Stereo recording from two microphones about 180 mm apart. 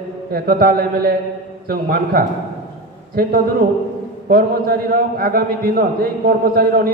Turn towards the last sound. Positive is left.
turn(degrees=-55)  # may be behind; listen again after turning